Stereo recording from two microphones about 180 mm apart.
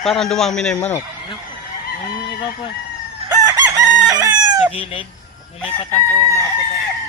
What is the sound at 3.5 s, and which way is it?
Chicken, 20° right (ahead or behind).